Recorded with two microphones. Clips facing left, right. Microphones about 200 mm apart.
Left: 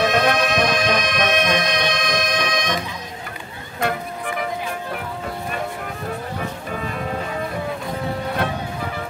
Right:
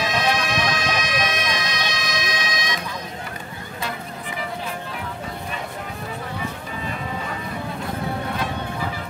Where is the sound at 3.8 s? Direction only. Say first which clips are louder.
Left 8 dB; 60° left (ahead or behind).